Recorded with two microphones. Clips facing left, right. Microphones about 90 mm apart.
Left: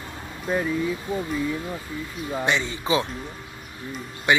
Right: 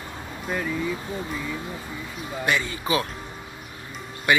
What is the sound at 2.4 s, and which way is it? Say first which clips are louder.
Speech: even; 25° left (ahead or behind).